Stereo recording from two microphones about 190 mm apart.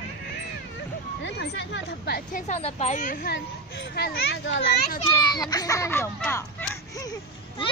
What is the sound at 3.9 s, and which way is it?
Speech, 60° left (ahead or behind).